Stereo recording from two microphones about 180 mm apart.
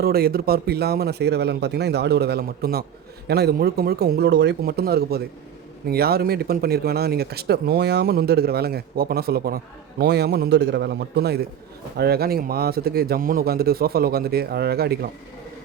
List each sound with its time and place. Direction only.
0.0 s speech: 55° right (ahead or behind)